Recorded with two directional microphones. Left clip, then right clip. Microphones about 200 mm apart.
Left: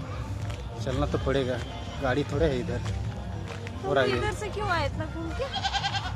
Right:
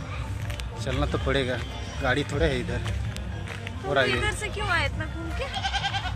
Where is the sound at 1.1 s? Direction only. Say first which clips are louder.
Right 2 dB; 10° right (ahead or behind).